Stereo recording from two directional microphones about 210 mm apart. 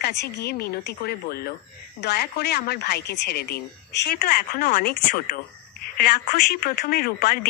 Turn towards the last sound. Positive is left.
turn(degrees=45)  # may be behind; listen again after turning